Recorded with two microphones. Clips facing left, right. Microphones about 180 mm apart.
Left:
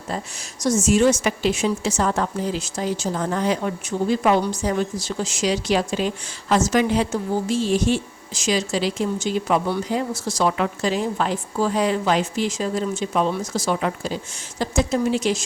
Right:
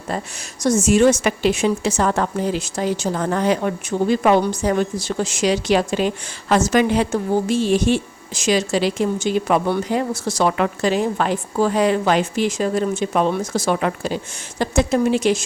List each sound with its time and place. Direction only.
0.6 s a woman's voice: 60° right (ahead or behind)